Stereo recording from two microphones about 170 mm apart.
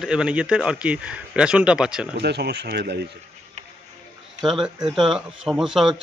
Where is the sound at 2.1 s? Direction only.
75° right (ahead or behind).